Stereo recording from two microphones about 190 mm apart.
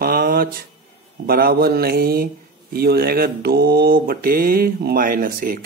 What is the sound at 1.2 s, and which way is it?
Speech, 50° right (ahead or behind).